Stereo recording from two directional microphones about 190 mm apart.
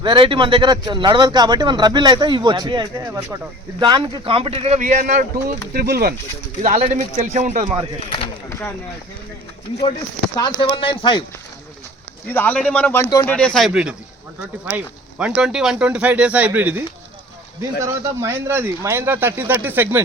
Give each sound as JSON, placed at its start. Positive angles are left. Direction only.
{"t": 0.0, "sound": "speech", "side_deg": -25}
{"t": 3.1, "sound": "speech", "side_deg": -10}
{"t": 3.8, "sound": "speech", "side_deg": -25}
{"t": 5.7, "sound": "speech", "side_deg": -55}
{"t": 6.6, "sound": "speech", "side_deg": -35}
{"t": 8.4, "sound": "speech", "side_deg": 15}
{"t": 10.3, "sound": "speech", "side_deg": 25}
{"t": 12.3, "sound": "speech", "side_deg": 10}
{"t": 13.2, "sound": "speech", "side_deg": 5}